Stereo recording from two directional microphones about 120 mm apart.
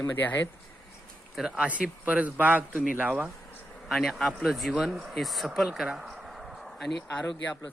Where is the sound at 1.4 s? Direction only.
5° right (ahead or behind).